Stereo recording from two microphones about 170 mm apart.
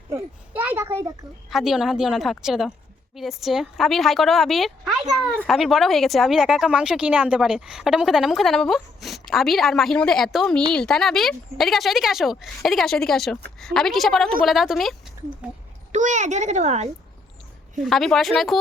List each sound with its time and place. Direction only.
0.1 s a child's voice: 10° right (ahead or behind)
1.5 s a woman's voice: centre (ahead or behind)
15.9 s a woman's voice: 45° right (ahead or behind)
17.8 s a woman's voice: centre (ahead or behind)